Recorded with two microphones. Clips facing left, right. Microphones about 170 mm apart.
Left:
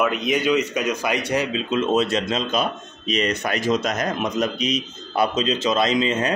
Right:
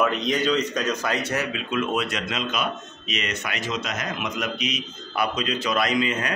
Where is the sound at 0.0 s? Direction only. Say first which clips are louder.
Left 2 dB; 5° left (ahead or behind).